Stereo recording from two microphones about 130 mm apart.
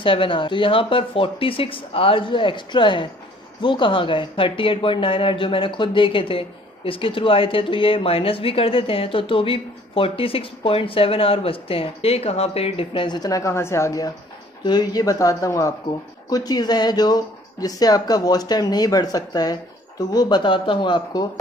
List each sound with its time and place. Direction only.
0.0 s speech: 40° left (ahead or behind)